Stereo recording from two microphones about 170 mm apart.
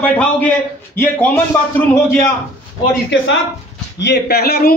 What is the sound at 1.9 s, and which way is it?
Speech, 15° left (ahead or behind).